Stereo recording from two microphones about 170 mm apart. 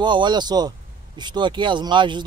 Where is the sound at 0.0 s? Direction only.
25° right (ahead or behind).